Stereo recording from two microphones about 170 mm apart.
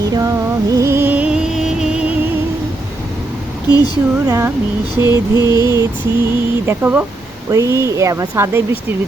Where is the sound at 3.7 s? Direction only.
25° left (ahead or behind).